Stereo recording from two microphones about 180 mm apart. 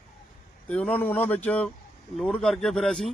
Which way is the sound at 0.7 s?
5° left (ahead or behind).